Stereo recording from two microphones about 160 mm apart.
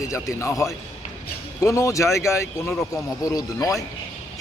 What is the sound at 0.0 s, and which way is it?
A man's voice, 20° left (ahead or behind).